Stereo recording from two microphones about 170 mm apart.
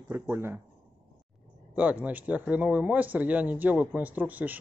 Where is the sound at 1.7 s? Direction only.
10° right (ahead or behind).